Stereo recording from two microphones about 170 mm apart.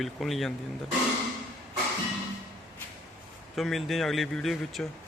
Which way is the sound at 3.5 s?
Centre (ahead or behind).